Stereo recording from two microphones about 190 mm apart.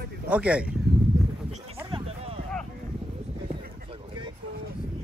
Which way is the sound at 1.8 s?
30° right (ahead or behind).